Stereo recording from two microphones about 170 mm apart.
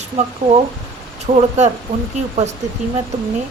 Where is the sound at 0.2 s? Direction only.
35° right (ahead or behind).